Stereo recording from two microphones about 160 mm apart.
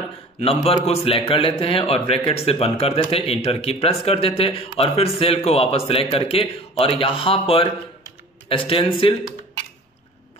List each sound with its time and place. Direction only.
0.4 s a man's voice: 40° left (ahead or behind)